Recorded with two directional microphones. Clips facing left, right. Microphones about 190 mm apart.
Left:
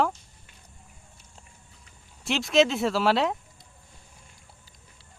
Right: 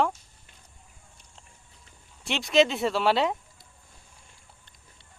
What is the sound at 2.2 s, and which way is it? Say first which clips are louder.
A man's voice: even; centre (ahead or behind).